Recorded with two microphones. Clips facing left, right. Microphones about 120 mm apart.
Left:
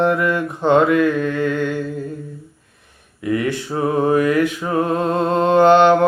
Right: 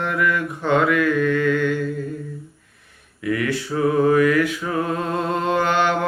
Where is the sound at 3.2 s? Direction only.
25° left (ahead or behind).